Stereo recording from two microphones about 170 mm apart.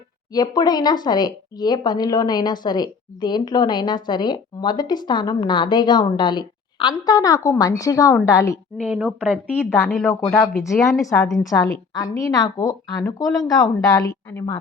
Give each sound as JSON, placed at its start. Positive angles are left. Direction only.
{"t": 0.3, "sound": "a woman's voice", "side_deg": 25}
{"t": 8.9, "sound": "speech", "side_deg": 0}
{"t": 9.6, "sound": "a woman's voice", "side_deg": 15}
{"t": 11.2, "sound": "speech", "side_deg": 0}
{"t": 11.4, "sound": "a woman's voice", "side_deg": 20}